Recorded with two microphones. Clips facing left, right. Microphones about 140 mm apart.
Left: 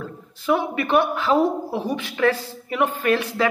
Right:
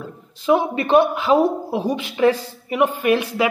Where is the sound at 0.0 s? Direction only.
20° right (ahead or behind).